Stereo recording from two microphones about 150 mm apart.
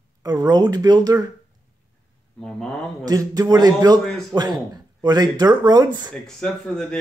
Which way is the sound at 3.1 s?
25° right (ahead or behind).